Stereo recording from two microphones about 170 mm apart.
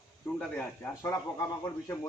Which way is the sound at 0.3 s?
10° left (ahead or behind).